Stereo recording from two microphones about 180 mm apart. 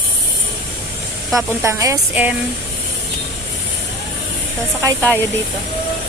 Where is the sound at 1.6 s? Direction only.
15° right (ahead or behind).